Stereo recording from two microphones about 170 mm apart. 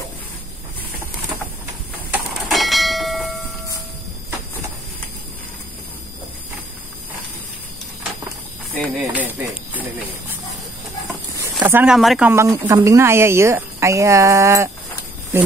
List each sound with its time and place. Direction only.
2.4 s bell: centre (ahead or behind)
8.9 s a woman's voice: 10° right (ahead or behind)
11.6 s speech: 10° right (ahead or behind)
12.3 s a woman's voice: 20° right (ahead or behind)